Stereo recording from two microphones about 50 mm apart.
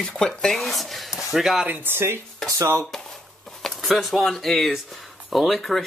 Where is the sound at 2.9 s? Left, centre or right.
Centre.